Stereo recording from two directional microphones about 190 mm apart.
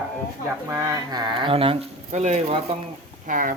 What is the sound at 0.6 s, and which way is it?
Speech, 20° right (ahead or behind).